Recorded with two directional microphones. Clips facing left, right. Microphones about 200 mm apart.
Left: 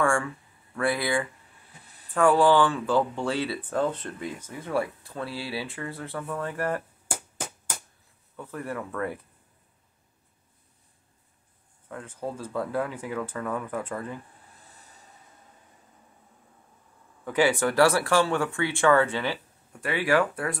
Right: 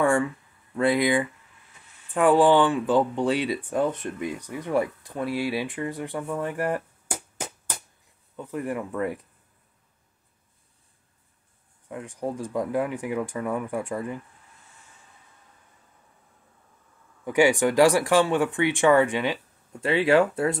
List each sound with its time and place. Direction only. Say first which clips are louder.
0.7 s speech: right 5 dB; 20° right (ahead or behind)
1.7 s a sound: left 6 dB; 35° left (ahead or behind)
2.1 s speech: right 2 dB; 15° right (ahead or behind)
8.4 s speech: right 4 dB; 15° right (ahead or behind)
11.9 s speech: right 3 dB; 15° right (ahead or behind)
14.5 s a sound: left 2 dB; 35° left (ahead or behind)
17.2 s speech: right 3 dB; 15° right (ahead or behind)